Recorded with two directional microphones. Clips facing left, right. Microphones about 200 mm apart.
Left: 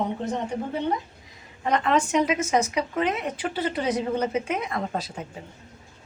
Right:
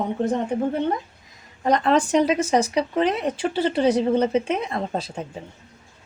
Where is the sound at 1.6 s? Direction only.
35° right (ahead or behind).